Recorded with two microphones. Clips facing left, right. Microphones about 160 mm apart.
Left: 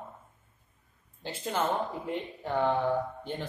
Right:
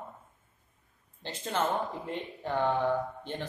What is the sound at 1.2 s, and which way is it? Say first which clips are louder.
Speech: even; 10° left (ahead or behind).